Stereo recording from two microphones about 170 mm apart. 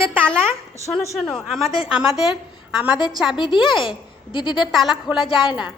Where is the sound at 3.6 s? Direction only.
5° right (ahead or behind).